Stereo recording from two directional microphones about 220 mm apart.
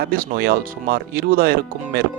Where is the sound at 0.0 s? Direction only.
40° right (ahead or behind).